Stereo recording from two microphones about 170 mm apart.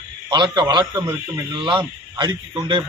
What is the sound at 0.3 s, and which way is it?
Speech, 25° right (ahead or behind).